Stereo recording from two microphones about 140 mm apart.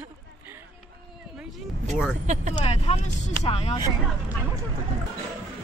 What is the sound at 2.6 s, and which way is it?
Speech, 40° left (ahead or behind).